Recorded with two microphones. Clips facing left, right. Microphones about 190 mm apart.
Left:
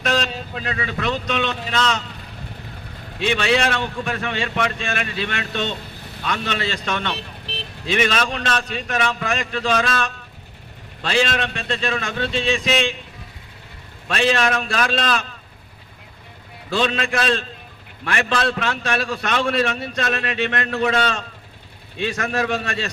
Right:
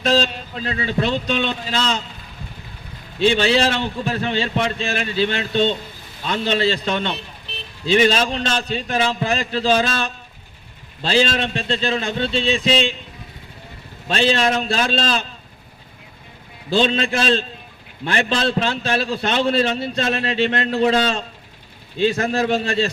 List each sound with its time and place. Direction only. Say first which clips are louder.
0.0 s a man's voice: right 4 dB; 30° right (ahead or behind)
3.2 s a man's voice: right 3 dB; 30° right (ahead or behind)
14.1 s a man's voice: right 1 dB; 30° right (ahead or behind)
16.6 s a man's voice: right 3 dB; 30° right (ahead or behind)